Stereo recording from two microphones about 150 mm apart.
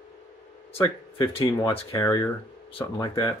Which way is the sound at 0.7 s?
20° left (ahead or behind).